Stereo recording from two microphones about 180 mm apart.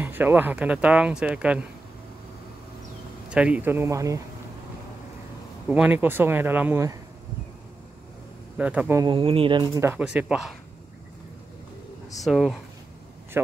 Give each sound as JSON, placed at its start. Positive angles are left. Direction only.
{"t": 0.0, "sound": "speech", "side_deg": -10}
{"t": 3.3, "sound": "speech", "side_deg": -5}
{"t": 5.7, "sound": "speech", "side_deg": -10}
{"t": 8.5, "sound": "speech", "side_deg": -10}
{"t": 9.0, "sound": "speech", "side_deg": -30}
{"t": 9.8, "sound": "speech", "side_deg": -10}
{"t": 12.2, "sound": "speech", "side_deg": 0}